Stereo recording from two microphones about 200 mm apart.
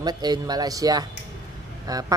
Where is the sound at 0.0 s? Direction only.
20° right (ahead or behind).